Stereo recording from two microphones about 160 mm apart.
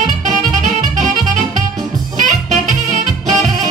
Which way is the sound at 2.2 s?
50° right (ahead or behind).